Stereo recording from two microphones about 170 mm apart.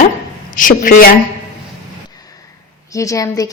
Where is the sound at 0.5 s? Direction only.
55° left (ahead or behind).